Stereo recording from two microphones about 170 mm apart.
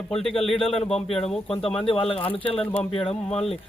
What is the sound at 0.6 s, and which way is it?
Speech, 35° left (ahead or behind).